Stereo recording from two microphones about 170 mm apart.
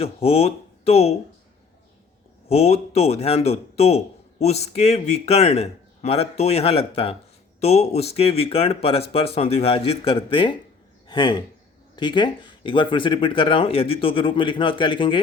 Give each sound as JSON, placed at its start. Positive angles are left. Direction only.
{"t": 0.0, "sound": "speech", "side_deg": 35}
{"t": 2.5, "sound": "a man's voice", "side_deg": 35}